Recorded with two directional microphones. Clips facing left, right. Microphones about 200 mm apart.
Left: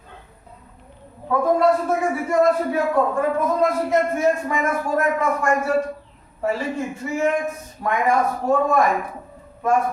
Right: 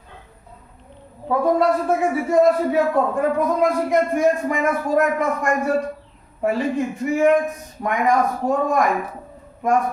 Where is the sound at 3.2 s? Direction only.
15° right (ahead or behind).